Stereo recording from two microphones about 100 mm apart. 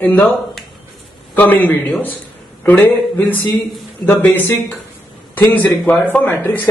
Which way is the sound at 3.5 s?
Centre (ahead or behind).